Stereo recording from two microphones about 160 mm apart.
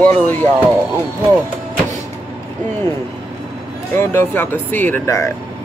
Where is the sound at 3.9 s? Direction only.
15° left (ahead or behind).